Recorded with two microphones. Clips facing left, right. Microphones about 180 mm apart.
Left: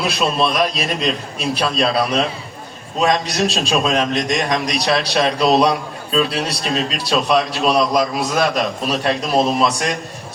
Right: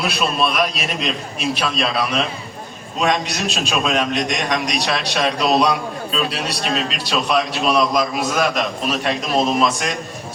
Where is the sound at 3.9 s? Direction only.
35° left (ahead or behind).